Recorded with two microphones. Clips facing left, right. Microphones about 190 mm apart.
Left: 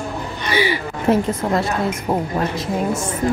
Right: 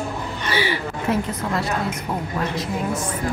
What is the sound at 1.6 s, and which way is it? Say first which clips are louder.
Speech: left 4 dB; 40° left (ahead or behind).